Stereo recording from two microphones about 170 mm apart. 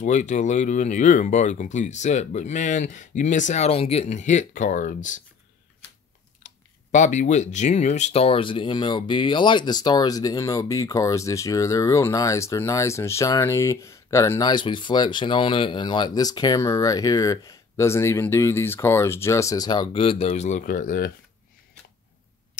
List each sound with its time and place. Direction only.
0.0 s speech: 45° left (ahead or behind)
6.4 s speech: 45° left (ahead or behind)